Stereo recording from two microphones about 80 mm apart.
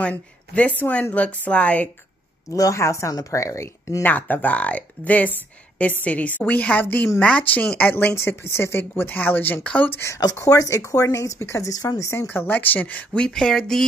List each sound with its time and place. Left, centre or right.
0.0 s a woman's voice: centre
2.5 s speech: left
4.0 s a woman's voice: left
8.1 s a woman's voice: left
10.4 s a woman's voice: left; by 13.8 s centre